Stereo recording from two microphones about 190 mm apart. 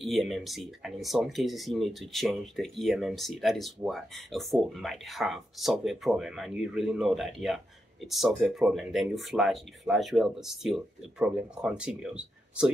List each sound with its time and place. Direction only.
0.0 s speech: centre (ahead or behind)